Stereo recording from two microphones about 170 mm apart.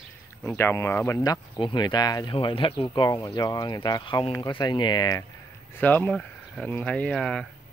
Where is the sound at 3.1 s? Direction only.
20° left (ahead or behind).